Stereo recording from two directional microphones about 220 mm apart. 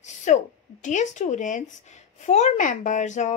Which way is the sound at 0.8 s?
35° left (ahead or behind).